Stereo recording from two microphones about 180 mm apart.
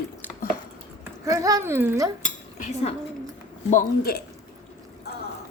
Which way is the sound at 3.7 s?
50° left (ahead or behind).